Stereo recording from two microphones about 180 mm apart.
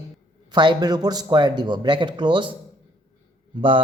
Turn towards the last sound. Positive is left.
turn(degrees=-30)  # may be behind; listen again after turning